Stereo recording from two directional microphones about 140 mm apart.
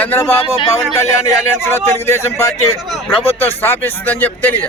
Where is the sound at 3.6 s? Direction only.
15° left (ahead or behind).